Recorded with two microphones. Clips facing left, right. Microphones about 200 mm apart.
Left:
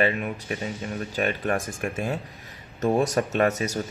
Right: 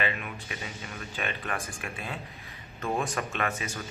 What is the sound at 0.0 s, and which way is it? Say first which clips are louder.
Speech: left 8 dB; 40° left (ahead or behind).